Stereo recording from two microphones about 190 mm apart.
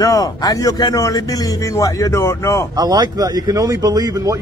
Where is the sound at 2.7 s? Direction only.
20° right (ahead or behind).